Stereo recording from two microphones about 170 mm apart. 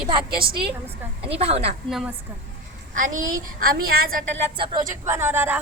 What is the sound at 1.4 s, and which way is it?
Speech, 35° right (ahead or behind).